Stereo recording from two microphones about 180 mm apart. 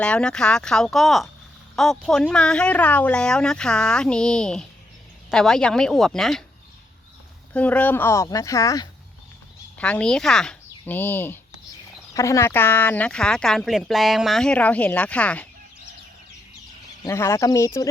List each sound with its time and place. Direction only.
0.0 s speech: 5° left (ahead or behind)
7.5 s speech: 5° left (ahead or behind)
9.7 s speech: 5° left (ahead or behind)
17.0 s speech: 15° left (ahead or behind)